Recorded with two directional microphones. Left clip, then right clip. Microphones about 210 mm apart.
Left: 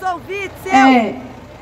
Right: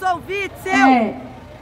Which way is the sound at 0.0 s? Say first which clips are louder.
Right 1 dB; 50° right (ahead or behind).